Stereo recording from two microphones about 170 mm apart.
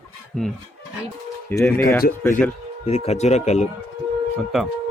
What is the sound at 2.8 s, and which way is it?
Speech, 40° left (ahead or behind).